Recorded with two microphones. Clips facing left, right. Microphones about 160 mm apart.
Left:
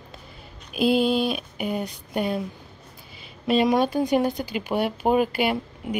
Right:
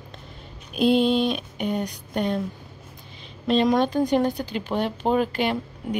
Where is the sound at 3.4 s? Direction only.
5° left (ahead or behind).